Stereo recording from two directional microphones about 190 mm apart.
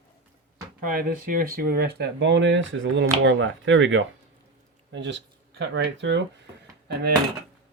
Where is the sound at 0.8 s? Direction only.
50° right (ahead or behind); by 6.2 s 70° right (ahead or behind).